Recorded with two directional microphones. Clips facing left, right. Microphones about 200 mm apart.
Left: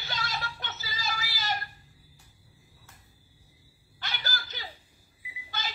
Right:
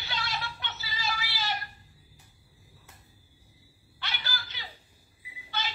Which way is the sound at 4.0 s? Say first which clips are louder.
Left 1 dB; 40° left (ahead or behind).